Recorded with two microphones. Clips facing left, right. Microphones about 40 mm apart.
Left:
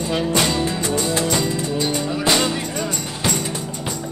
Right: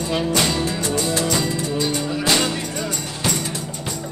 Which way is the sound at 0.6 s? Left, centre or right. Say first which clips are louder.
Left 1 dB; left.